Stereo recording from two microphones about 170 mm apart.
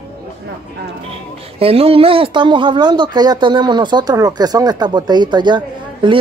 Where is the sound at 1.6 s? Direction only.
35° right (ahead or behind).